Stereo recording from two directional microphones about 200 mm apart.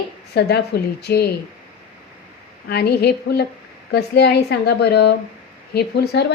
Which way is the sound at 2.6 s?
55° left (ahead or behind).